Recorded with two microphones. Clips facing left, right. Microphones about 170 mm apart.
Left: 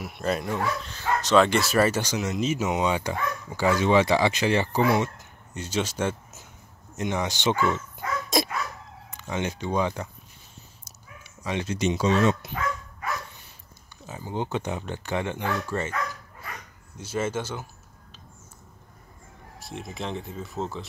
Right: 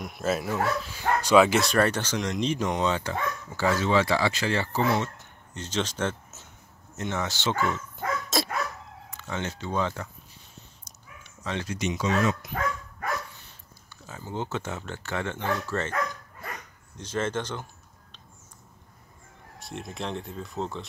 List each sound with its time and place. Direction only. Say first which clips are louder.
0.0 s speech: even; centre (ahead or behind); by 7.5 s 15° left (ahead or behind)
8.3 s dog: left 5 dB; 15° left (ahead or behind)
9.1 s speech: left 3 dB; 15° left (ahead or behind)
10.8 s dog: left 1 dB; 10° left (ahead or behind)
11.6 s speech: left 5 dB; 25° left (ahead or behind)
14.0 s speech: left 3 dB; 15° left (ahead or behind)
19.6 s speech: even; centre (ahead or behind)